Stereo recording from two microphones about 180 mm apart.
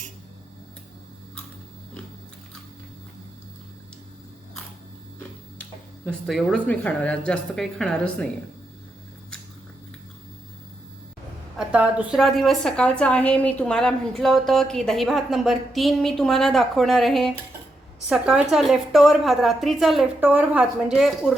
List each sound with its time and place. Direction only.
6.1 s a woman's voice: 5° left (ahead or behind)
11.7 s a woman's voice: 10° right (ahead or behind)